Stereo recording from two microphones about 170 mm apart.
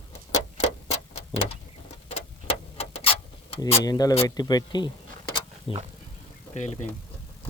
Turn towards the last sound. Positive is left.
turn(degrees=45)  # may be behind; listen again after turning